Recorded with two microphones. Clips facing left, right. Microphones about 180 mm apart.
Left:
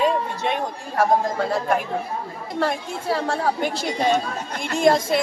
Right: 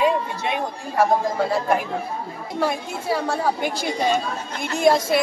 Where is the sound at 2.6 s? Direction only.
5° right (ahead or behind).